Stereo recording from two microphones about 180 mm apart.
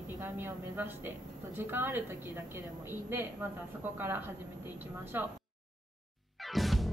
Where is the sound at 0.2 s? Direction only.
10° right (ahead or behind).